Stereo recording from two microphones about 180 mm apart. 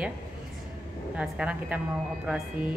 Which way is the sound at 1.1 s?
5° right (ahead or behind).